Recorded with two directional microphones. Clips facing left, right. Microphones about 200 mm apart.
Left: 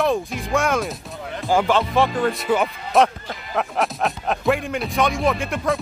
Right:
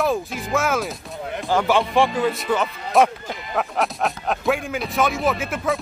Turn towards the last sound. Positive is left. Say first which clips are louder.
# left 1 dB
turn(degrees=0)  # may be behind; listen again after turning